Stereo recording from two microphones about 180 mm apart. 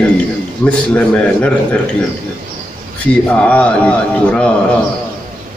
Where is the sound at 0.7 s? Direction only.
5° left (ahead or behind).